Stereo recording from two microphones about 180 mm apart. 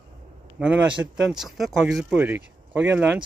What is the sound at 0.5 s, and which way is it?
Speech, 5° right (ahead or behind).